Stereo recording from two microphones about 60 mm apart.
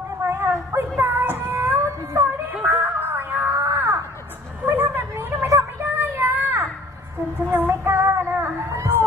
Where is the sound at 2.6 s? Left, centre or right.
Right.